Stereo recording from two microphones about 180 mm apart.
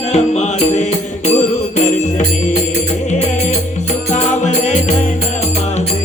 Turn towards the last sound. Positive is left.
turn(degrees=40)  # may be behind; listen again after turning